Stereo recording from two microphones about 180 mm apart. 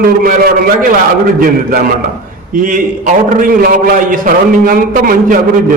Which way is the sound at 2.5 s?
50° right (ahead or behind).